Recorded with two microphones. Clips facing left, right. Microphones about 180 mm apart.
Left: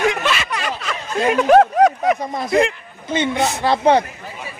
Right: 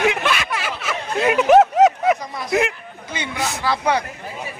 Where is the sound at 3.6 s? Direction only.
25° left (ahead or behind).